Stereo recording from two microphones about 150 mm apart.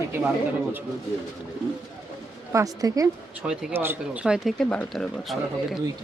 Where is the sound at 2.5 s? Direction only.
25° right (ahead or behind).